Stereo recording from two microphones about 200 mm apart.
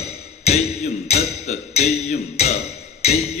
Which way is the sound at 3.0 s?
30° left (ahead or behind).